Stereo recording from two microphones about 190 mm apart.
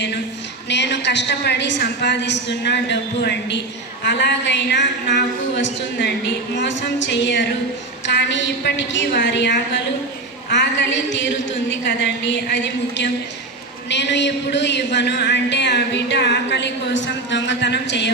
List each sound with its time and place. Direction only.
0.7 s a woman's voice: 65° left (ahead or behind)